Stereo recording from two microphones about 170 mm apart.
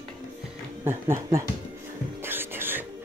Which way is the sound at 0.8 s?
15° right (ahead or behind).